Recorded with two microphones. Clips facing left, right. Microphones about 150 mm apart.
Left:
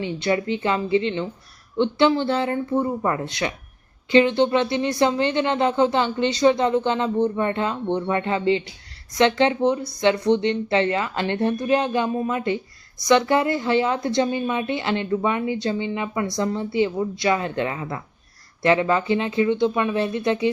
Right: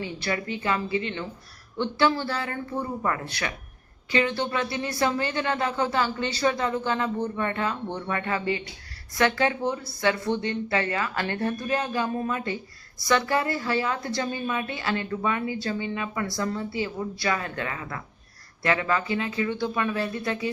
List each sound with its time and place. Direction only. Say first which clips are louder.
0.0 s a woman's voice: left 7 dB; 25° left (ahead or behind)